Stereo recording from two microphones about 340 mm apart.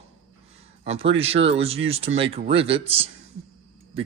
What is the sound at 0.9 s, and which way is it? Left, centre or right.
Speech, centre.